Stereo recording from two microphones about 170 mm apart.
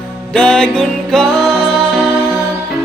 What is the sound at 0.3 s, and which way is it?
Music, 5° left (ahead or behind).